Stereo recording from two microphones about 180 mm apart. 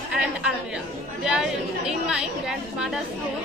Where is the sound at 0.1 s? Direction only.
5° right (ahead or behind).